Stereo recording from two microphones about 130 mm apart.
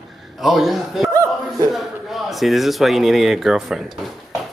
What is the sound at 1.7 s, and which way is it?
A man's voice, centre (ahead or behind).